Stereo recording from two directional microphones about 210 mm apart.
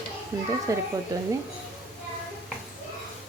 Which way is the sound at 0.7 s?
15° right (ahead or behind).